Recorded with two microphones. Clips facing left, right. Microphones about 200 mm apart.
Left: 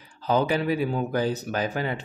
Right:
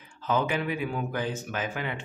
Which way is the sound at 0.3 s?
35° left (ahead or behind).